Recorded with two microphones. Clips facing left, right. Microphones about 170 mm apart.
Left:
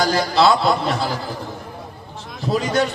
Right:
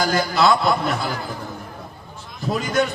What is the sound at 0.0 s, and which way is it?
Speech, 35° left (ahead or behind).